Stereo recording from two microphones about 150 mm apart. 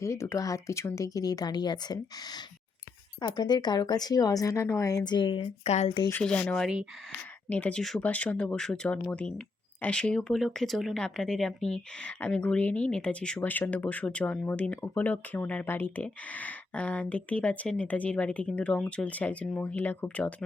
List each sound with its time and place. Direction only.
0.0 s speech: 20° left (ahead or behind); by 6.0 s 45° left (ahead or behind)
6.2 s speech: 10° left (ahead or behind)